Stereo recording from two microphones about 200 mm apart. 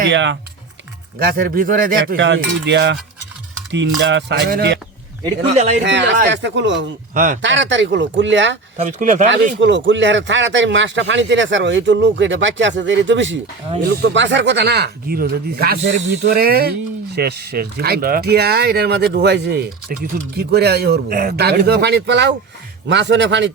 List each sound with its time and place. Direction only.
0.0 s speech: 65° right (ahead or behind)
1.2 s speech: 50° right (ahead or behind)
2.1 s speech: 65° right (ahead or behind); by 4.8 s 50° right (ahead or behind)
5.5 s speech: 35° right (ahead or behind)
5.8 s speech: 60° right (ahead or behind)
7.1 s speech: 40° right (ahead or behind)
7.4 s speech: 65° right (ahead or behind)
8.8 s speech: 40° right (ahead or behind)
9.3 s speech: 65° right (ahead or behind)